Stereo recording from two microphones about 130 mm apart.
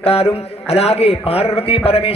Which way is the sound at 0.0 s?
50° left (ahead or behind).